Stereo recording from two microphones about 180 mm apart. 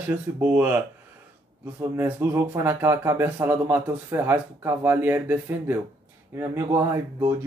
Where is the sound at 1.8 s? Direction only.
10° right (ahead or behind).